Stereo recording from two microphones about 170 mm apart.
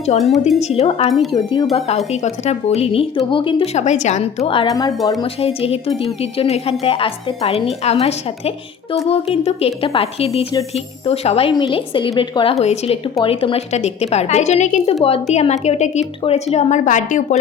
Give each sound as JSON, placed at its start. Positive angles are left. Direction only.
{"t": 0.2, "sound": "a woman's voice", "side_deg": 0}
{"t": 0.6, "sound": "speech", "side_deg": 35}
{"t": 1.3, "sound": "speech", "side_deg": 25}
{"t": 2.2, "sound": "speech", "side_deg": 40}
{"t": 4.7, "sound": "speech", "side_deg": 20}
{"t": 5.2, "sound": "a woman's voice", "side_deg": 35}